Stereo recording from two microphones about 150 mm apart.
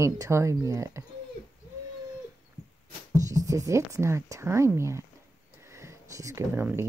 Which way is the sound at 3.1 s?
20° right (ahead or behind).